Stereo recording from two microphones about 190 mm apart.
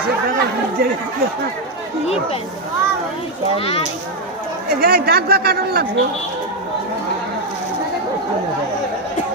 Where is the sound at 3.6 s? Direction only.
30° left (ahead or behind).